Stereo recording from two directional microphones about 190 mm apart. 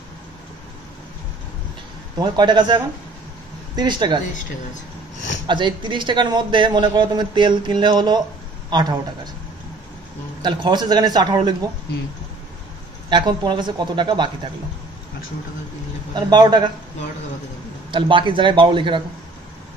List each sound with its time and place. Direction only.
2.1 s a man's voice: 25° right (ahead or behind)
5.5 s a man's voice: 25° right (ahead or behind)
10.4 s a man's voice: 25° right (ahead or behind)
13.1 s a man's voice: 25° right (ahead or behind)
16.2 s a man's voice: 20° right (ahead or behind)
17.9 s a man's voice: 25° right (ahead or behind)